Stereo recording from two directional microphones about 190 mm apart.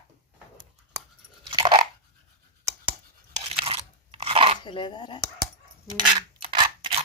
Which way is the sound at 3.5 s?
30° right (ahead or behind).